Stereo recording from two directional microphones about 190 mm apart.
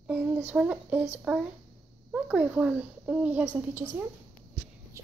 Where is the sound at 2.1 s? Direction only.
5° right (ahead or behind).